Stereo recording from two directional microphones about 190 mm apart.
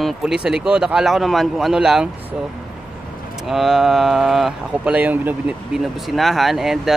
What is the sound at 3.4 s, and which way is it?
Speech, centre (ahead or behind).